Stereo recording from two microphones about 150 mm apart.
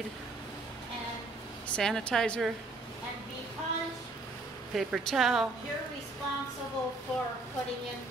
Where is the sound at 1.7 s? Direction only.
5° left (ahead or behind).